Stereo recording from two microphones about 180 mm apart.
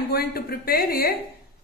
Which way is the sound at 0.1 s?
60° left (ahead or behind).